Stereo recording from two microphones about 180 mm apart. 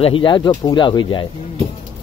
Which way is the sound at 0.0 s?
25° left (ahead or behind).